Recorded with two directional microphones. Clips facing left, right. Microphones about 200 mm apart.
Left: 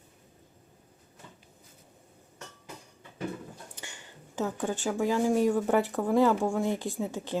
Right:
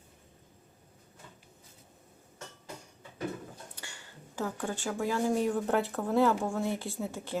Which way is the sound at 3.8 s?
20° left (ahead or behind).